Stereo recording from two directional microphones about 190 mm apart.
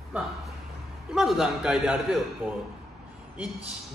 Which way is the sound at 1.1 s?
Centre (ahead or behind).